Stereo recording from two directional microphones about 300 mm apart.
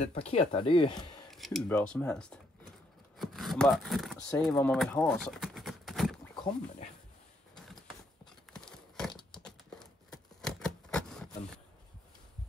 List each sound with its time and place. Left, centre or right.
0.0 s speech: left
1.3 s speech: centre
8.5 s a sound: centre
10.4 s typewriter: centre